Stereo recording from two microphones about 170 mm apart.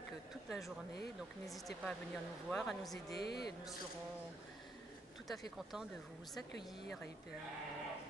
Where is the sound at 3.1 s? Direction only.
70° left (ahead or behind).